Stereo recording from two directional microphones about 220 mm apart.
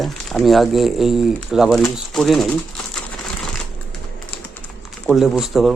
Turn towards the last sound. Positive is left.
turn(degrees=0)  # may be behind; listen again after turning